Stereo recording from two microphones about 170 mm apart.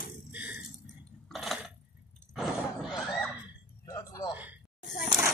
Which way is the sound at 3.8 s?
20° left (ahead or behind).